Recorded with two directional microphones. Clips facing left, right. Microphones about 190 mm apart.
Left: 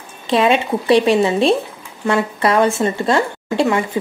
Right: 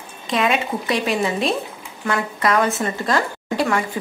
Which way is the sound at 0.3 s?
30° left (ahead or behind).